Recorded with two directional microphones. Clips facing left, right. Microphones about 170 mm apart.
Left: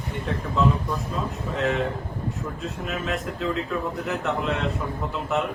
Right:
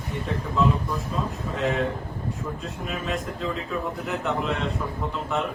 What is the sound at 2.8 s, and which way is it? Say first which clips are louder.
Speech: even; centre (ahead or behind).